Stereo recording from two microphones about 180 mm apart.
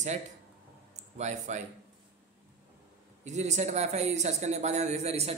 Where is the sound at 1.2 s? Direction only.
40° right (ahead or behind).